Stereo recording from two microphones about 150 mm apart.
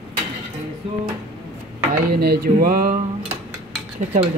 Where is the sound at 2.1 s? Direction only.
90° right; by 3.0 s 70° right (ahead or behind).